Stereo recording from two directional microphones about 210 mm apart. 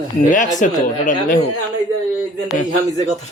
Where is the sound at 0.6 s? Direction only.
40° left (ahead or behind).